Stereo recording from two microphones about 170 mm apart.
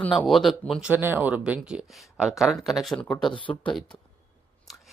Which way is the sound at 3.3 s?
30° left (ahead or behind).